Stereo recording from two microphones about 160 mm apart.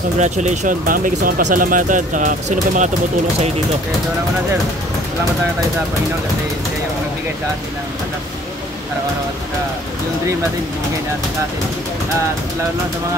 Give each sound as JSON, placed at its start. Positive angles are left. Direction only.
{"t": 0.2, "sound": "speech", "side_deg": -50}